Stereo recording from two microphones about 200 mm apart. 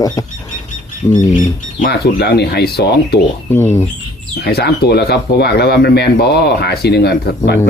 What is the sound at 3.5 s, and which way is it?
Speech, 10° left (ahead or behind).